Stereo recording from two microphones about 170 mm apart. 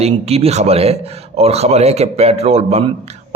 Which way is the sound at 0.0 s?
35° right (ahead or behind).